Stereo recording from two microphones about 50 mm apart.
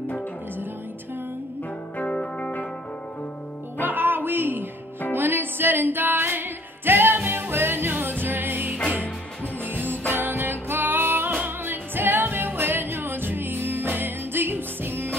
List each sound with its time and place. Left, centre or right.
2.0 s music: left
3.8 s music: right